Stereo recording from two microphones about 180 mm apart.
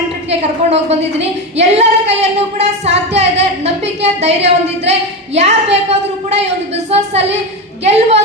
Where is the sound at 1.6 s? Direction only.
35° right (ahead or behind).